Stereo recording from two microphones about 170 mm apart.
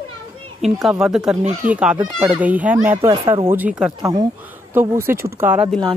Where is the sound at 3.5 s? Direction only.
10° right (ahead or behind).